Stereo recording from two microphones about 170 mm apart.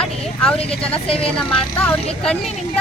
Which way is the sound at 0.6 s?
35° left (ahead or behind).